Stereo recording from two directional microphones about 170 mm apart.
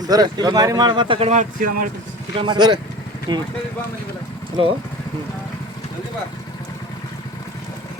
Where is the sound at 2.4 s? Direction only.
25° right (ahead or behind).